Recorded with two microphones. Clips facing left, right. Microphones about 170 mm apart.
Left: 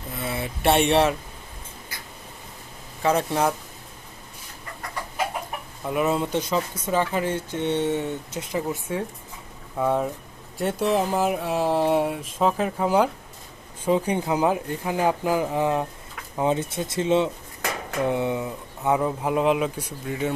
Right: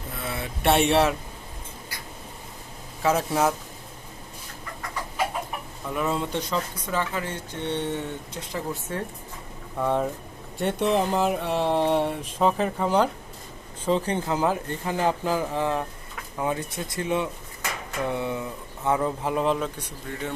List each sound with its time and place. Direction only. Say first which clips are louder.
0.2 s a sound: left 3 dB; 5° left (ahead or behind)
3.0 s mantra: left 1 dB; 5° right (ahead or behind)
5.9 s speech: left 4 dB; 15° left (ahead or behind)
7.3 s speech: left 5 dB; 15° left (ahead or behind)
9.7 s mantra: left 1 dB; 5° left (ahead or behind)
13.8 s speech: left 2 dB; 10° left (ahead or behind)